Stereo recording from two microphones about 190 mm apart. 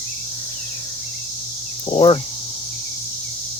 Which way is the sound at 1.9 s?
25° left (ahead or behind).